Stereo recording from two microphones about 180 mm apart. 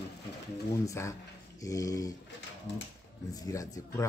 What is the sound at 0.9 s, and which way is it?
Speech, 15° left (ahead or behind).